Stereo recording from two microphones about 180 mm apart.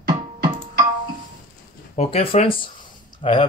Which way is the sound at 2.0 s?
35° left (ahead or behind).